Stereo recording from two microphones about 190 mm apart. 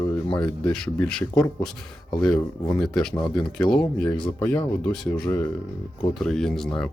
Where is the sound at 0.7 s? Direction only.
5° left (ahead or behind).